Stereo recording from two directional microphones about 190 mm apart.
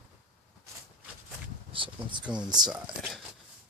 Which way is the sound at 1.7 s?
25° right (ahead or behind).